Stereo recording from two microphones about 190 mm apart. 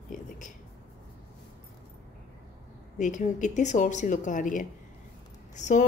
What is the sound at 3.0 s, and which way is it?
A woman's voice, 40° left (ahead or behind).